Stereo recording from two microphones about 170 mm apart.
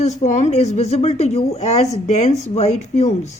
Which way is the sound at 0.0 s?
40° left (ahead or behind).